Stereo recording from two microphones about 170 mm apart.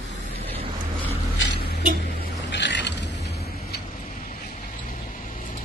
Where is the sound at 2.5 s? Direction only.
90° left.